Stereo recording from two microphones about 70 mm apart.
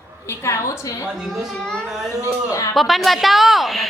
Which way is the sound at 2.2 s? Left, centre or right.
Left.